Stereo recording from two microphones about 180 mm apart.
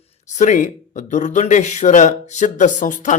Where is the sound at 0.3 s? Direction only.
45° left (ahead or behind).